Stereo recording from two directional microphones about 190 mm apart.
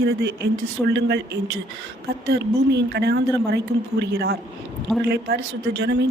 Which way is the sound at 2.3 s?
60° right (ahead or behind).